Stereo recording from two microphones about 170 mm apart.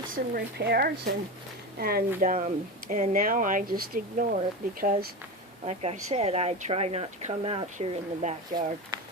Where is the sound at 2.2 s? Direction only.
50° right (ahead or behind).